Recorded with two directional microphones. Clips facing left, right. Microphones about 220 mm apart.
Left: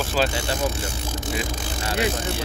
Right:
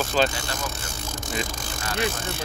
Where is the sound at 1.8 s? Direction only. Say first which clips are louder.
Left 3 dB; 20° left (ahead or behind).